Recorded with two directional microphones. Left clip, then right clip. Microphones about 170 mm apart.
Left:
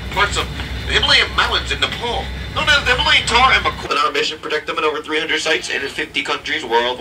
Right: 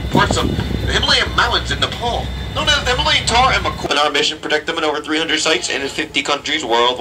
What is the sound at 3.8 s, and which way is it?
A man's voice, 60° right (ahead or behind).